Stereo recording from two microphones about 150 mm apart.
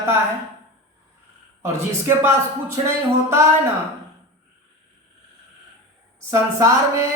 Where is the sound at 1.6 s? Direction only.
15° right (ahead or behind).